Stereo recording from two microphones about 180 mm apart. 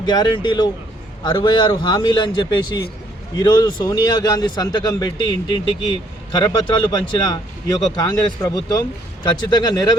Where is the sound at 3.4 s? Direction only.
25° left (ahead or behind).